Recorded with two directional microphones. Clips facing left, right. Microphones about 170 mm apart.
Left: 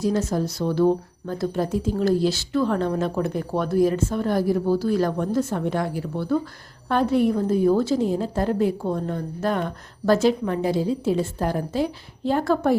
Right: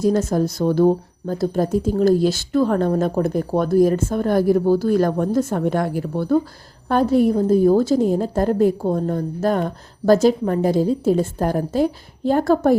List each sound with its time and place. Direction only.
0.0 s speech: 50° right (ahead or behind)